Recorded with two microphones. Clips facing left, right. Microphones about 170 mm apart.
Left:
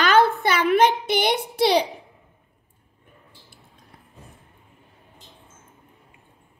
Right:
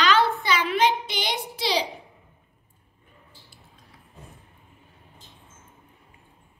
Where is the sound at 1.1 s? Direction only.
55° left (ahead or behind).